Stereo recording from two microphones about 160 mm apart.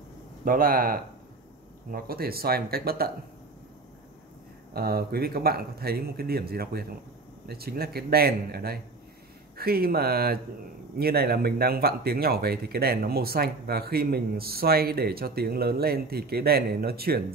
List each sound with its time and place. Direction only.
0.5 s speech: 65° right (ahead or behind)
4.7 s speech: 75° right (ahead or behind)